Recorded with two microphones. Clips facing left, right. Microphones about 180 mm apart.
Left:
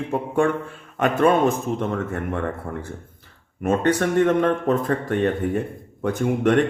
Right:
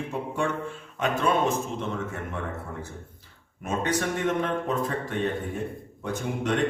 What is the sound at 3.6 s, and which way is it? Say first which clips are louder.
Speech: left 7 dB; 60° left (ahead or behind).